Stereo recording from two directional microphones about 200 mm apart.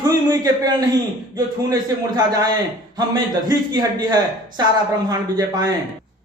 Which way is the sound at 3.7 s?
20° right (ahead or behind).